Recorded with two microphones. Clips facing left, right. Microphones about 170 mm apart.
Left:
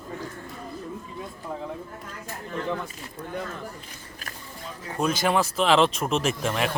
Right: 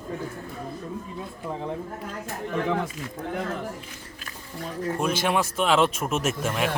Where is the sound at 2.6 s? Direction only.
80° right.